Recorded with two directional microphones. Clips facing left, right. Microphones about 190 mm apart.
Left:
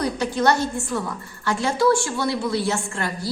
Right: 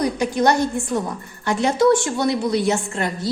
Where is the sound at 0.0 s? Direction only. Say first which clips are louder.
Right 2 dB; 15° right (ahead or behind).